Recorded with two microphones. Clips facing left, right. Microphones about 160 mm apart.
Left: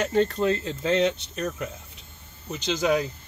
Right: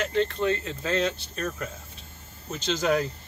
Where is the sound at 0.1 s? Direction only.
40° left (ahead or behind).